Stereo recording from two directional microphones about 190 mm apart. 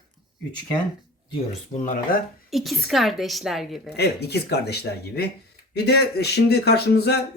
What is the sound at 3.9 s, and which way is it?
Speech, 60° left (ahead or behind).